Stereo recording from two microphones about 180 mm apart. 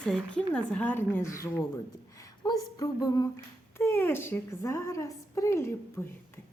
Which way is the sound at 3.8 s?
10° left (ahead or behind).